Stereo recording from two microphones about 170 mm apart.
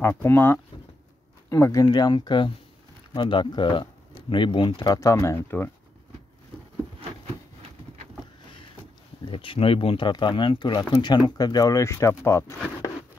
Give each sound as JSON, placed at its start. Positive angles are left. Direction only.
{"t": 0.0, "sound": "speech", "side_deg": 15}
{"t": 9.2, "sound": "speech", "side_deg": 30}